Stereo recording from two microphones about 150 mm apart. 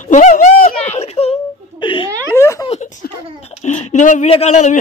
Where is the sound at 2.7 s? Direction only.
50° left (ahead or behind).